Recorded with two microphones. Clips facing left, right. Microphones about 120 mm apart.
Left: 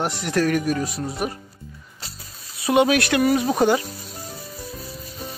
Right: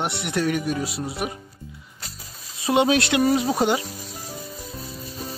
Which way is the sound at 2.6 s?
20° right (ahead or behind).